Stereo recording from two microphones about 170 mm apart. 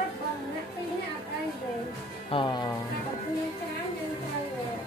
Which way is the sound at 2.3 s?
30° left (ahead or behind).